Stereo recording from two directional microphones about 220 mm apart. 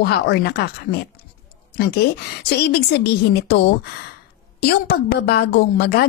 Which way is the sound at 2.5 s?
45° left (ahead or behind).